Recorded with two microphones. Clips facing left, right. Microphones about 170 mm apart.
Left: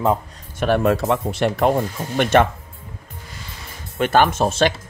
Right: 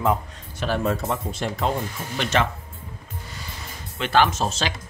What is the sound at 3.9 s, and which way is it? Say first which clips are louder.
Speech: left 4 dB; 50° left (ahead or behind).